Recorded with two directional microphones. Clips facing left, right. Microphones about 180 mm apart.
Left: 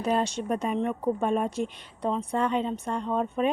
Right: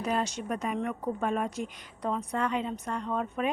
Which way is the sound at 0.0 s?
30° left (ahead or behind).